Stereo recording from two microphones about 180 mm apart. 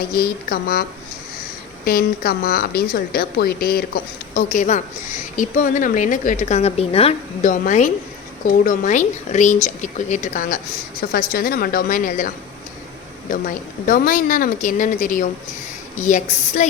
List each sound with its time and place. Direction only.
0.0 s a woman's voice: 55° left (ahead or behind); by 7.5 s 35° left (ahead or behind)
7.6 s a woman's voice: 45° left (ahead or behind)
13.3 s a woman's voice: 50° left (ahead or behind)